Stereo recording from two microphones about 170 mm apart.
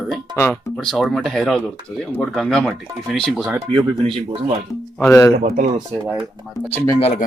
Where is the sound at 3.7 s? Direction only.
30° right (ahead or behind).